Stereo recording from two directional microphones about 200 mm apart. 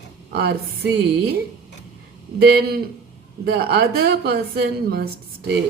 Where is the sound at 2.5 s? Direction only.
50° right (ahead or behind).